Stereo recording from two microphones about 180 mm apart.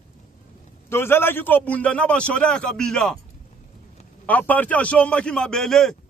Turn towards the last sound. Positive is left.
turn(degrees=0)  # may be behind; listen again after turning